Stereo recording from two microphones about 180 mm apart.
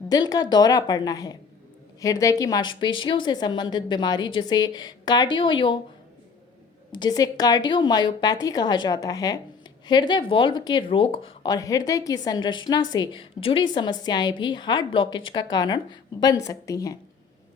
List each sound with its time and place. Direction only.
0.1 s a woman's voice: 20° left (ahead or behind)
6.9 s a woman's voice: 25° left (ahead or behind)